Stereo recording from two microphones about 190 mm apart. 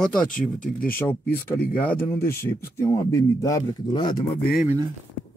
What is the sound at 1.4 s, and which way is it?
Speech, 10° left (ahead or behind).